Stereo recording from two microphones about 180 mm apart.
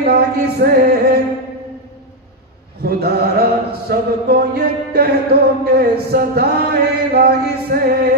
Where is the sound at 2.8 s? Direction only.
60° right (ahead or behind).